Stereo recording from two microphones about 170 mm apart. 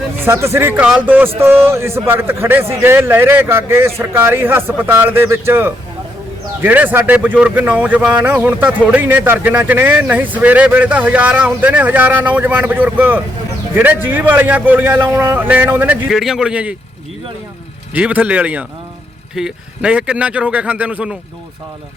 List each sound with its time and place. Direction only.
0.3 s speech: 15° right (ahead or behind)
17.9 s speech: 10° right (ahead or behind)